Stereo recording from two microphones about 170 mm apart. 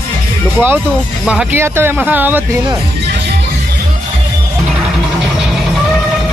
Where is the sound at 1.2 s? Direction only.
10° right (ahead or behind).